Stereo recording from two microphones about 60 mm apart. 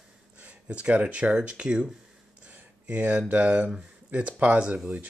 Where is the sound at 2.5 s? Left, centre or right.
Right.